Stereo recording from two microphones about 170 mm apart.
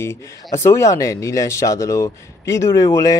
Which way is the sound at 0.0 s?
15° left (ahead or behind).